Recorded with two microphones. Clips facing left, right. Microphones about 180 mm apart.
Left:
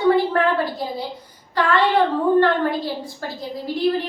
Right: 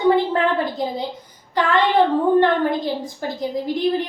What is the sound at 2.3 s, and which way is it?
A woman's voice, 15° right (ahead or behind).